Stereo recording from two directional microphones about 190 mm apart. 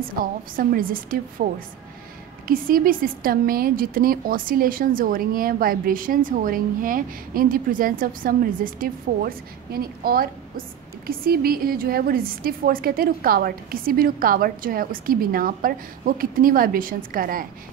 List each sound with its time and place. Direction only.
0.2 s a woman's voice: 50° right (ahead or behind)